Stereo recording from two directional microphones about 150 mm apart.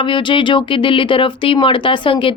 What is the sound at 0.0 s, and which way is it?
A woman's voice, 35° left (ahead or behind).